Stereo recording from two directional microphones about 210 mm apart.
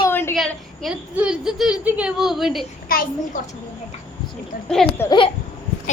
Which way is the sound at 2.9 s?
45° left (ahead or behind).